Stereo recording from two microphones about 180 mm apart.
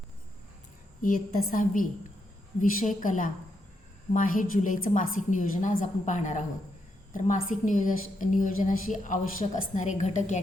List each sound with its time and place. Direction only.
1.5 s a woman's voice: 50° left (ahead or behind)